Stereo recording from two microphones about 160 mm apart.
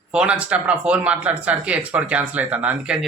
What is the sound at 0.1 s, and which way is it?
Speech, 5° right (ahead or behind).